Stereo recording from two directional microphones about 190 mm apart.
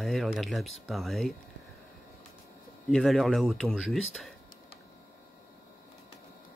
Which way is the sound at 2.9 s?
5° left (ahead or behind).